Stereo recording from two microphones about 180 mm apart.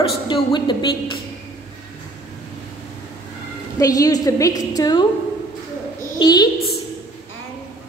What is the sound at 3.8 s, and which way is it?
A woman's voice, 20° left (ahead or behind).